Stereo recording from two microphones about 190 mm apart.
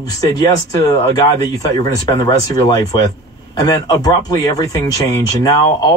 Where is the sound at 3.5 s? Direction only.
20° left (ahead or behind).